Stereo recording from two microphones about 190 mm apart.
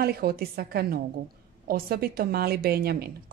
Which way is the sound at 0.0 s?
55° right (ahead or behind).